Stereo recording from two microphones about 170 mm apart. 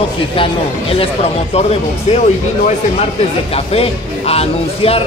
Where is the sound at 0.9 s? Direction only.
35° left (ahead or behind).